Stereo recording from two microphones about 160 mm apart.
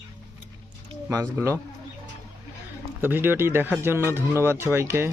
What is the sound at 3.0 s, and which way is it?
Speech, 10° right (ahead or behind).